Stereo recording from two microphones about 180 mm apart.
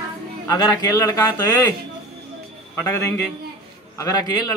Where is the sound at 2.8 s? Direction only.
15° left (ahead or behind).